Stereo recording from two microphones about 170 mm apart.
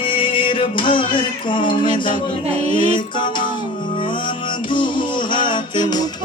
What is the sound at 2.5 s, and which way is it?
Speech, 40° right (ahead or behind).